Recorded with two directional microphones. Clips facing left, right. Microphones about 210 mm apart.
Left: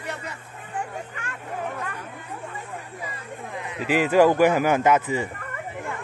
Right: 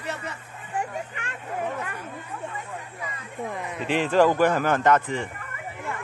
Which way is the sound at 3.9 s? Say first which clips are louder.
Left 2 dB; 10° left (ahead or behind).